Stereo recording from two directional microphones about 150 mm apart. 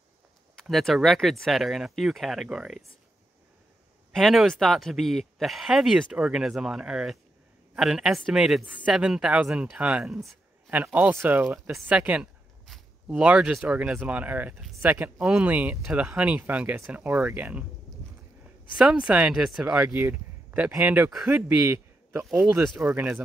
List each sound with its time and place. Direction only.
0.6 s speech: centre (ahead or behind)
4.1 s a woman's voice: centre (ahead or behind)